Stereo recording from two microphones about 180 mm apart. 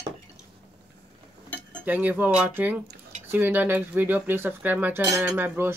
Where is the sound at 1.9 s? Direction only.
10° right (ahead or behind).